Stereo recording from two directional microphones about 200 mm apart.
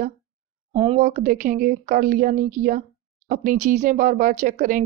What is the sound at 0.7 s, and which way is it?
Speech, 30° right (ahead or behind).